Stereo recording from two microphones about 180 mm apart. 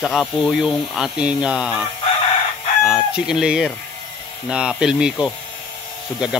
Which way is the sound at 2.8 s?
5° right (ahead or behind).